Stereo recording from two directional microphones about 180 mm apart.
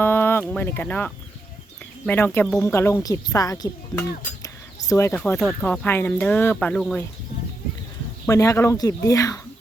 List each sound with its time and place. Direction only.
0.0 s speech: 10° left (ahead or behind)
4.9 s speech: 15° left (ahead or behind)
8.3 s speech: 15° left (ahead or behind)